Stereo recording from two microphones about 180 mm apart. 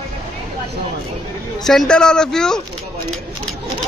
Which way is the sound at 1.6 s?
5° left (ahead or behind).